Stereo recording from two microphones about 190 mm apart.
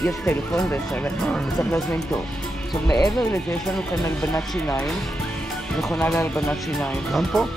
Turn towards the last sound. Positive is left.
turn(degrees=0)  # may be behind; listen again after turning